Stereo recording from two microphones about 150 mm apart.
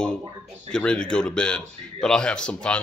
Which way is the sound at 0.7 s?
5° left (ahead or behind).